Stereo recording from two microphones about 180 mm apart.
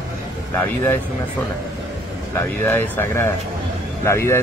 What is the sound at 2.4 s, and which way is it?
A man's voice, 10° left (ahead or behind).